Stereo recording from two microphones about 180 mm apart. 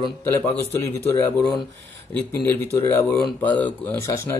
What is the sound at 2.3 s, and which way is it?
A man's voice, 10° left (ahead or behind).